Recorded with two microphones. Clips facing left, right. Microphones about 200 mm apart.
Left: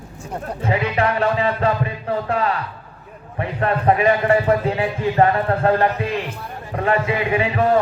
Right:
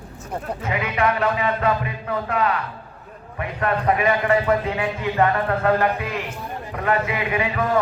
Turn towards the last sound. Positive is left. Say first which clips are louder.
# left 4 dB
turn(degrees=30)  # may be behind; listen again after turning